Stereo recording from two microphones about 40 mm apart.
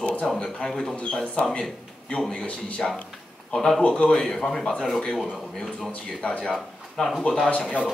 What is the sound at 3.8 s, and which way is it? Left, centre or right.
Speech, left.